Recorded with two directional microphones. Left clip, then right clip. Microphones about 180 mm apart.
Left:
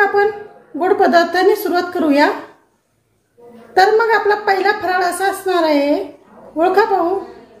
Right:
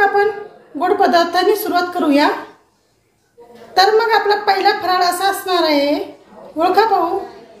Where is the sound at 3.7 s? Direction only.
60° left (ahead or behind).